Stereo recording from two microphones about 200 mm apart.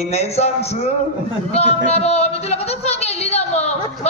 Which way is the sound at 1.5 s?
30° left (ahead or behind).